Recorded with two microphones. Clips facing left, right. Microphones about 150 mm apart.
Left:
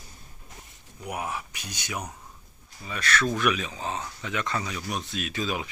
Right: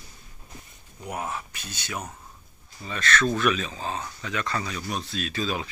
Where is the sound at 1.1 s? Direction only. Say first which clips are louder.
Even; 15° left (ahead or behind).